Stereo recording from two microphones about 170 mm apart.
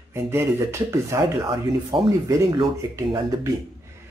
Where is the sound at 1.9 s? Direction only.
30° right (ahead or behind).